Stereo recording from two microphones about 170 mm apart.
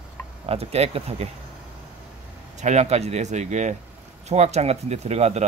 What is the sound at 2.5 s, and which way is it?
A man's voice, 45° right (ahead or behind).